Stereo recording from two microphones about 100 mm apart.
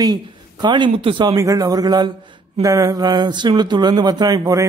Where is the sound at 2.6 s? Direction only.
35° right (ahead or behind).